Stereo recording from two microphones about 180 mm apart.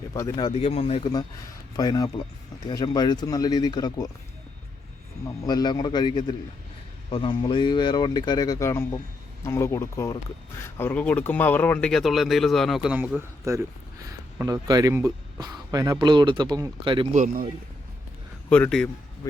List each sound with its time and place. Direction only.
0.1 s speech: 20° left (ahead or behind)
0.5 s speech: 35° left (ahead or behind)
5.4 s speech: 20° left (ahead or behind); by 17.2 s 30° right (ahead or behind)
17.2 s a man's voice: 40° right (ahead or behind)
18.4 s speech: 10° left (ahead or behind)
19.2 s speech: 20° left (ahead or behind)